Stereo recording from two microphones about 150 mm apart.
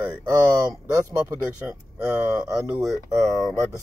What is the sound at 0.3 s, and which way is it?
Speech, 25° right (ahead or behind).